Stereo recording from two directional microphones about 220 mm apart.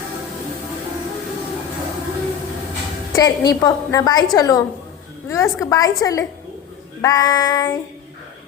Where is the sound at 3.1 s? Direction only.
15° left (ahead or behind).